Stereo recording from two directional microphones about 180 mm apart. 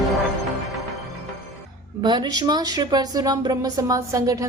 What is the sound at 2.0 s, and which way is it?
Speech, 25° right (ahead or behind).